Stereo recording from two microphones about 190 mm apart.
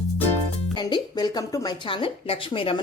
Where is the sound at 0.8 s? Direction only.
25° left (ahead or behind).